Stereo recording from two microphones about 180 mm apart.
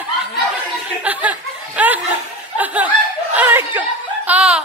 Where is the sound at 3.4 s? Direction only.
10° right (ahead or behind).